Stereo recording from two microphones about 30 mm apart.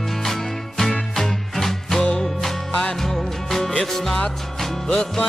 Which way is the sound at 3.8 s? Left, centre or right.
Centre.